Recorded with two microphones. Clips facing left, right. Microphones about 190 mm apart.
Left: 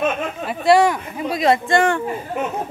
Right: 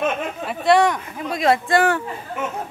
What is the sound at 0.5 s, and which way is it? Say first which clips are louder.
Speech: left 2 dB; 5° left (ahead or behind).